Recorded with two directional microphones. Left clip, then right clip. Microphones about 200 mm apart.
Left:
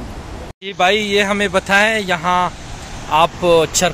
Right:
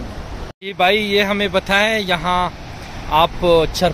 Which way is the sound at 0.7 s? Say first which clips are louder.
Left 1 dB; centre (ahead or behind).